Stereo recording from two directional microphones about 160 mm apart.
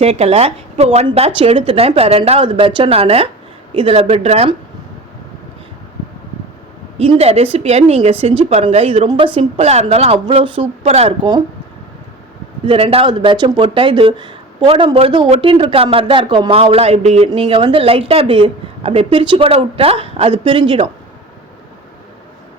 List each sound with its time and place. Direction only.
0.0 s speech: 40° right (ahead or behind)
7.0 s speech: 40° right (ahead or behind)
12.6 s speech: 35° right (ahead or behind)